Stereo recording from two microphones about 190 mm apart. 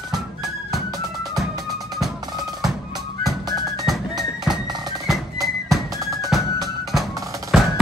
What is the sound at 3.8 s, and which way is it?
Music, centre (ahead or behind).